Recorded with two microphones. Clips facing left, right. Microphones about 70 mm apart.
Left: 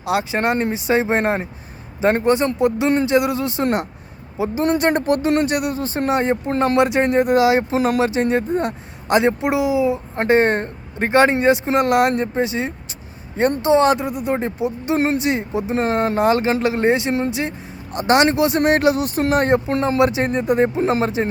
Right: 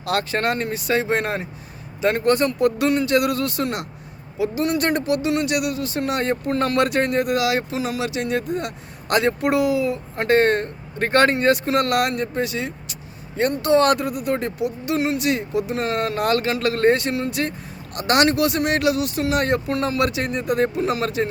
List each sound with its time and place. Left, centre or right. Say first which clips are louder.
0.0 s speech: left 2 dB; centre
7.8 s speech: left 7 dB; left
8.0 s speech: left 5 dB; left
13.6 s speech: left 1 dB; centre